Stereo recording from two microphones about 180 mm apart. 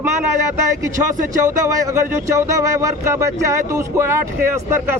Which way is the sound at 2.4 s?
15° right (ahead or behind).